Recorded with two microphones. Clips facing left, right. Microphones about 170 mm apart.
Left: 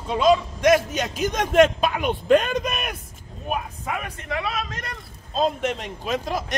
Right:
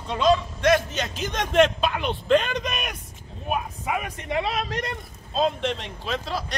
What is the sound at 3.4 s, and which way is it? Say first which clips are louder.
Speech: right 1 dB; 10° right (ahead or behind).